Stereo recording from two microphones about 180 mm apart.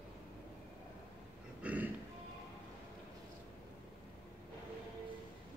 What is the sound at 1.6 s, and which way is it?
Music, 10° right (ahead or behind).